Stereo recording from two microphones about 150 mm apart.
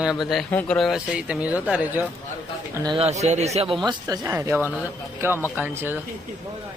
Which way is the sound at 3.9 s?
25° right (ahead or behind).